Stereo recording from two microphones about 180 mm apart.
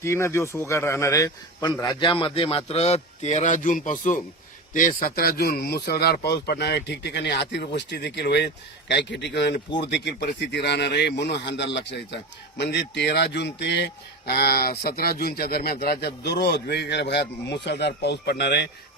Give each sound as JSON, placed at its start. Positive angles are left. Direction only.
{"t": 0.0, "sound": "a man's voice", "side_deg": 15}